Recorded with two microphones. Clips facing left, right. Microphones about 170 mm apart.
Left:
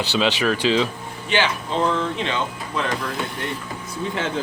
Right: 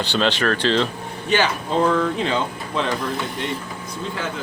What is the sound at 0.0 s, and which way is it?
Speech, 5° left (ahead or behind).